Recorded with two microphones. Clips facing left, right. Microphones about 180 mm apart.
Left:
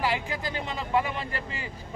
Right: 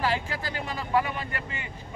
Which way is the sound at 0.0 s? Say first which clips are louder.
Even; 15° left (ahead or behind).